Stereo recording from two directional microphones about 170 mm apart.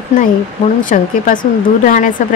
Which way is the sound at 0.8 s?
50° left (ahead or behind).